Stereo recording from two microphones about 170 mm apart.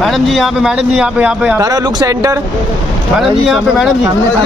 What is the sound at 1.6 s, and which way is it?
Speech, 20° right (ahead or behind).